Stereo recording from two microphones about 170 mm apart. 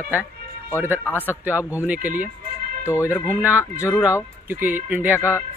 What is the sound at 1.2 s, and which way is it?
Speech, 10° right (ahead or behind).